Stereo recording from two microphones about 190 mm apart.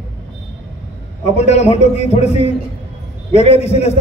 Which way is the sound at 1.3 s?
35° left (ahead or behind).